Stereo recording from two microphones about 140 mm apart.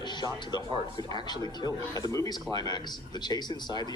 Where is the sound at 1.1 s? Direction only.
30° left (ahead or behind).